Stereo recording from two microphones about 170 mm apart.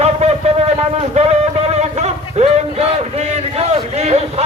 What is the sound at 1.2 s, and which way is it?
Music, 40° right (ahead or behind).